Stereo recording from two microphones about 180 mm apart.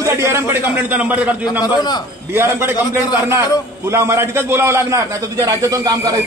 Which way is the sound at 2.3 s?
15° right (ahead or behind).